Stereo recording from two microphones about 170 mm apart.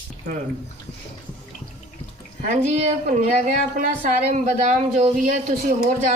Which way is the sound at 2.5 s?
40° right (ahead or behind).